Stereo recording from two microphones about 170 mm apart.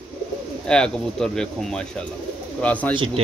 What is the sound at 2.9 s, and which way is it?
Speech, 30° right (ahead or behind).